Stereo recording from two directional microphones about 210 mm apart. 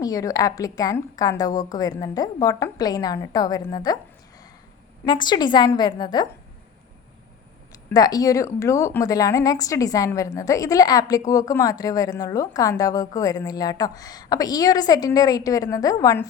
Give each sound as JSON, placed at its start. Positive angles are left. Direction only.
{"t": 0.0, "sound": "a woman's voice", "side_deg": 15}
{"t": 5.0, "sound": "a woman's voice", "side_deg": 20}
{"t": 7.7, "sound": "a woman's voice", "side_deg": 15}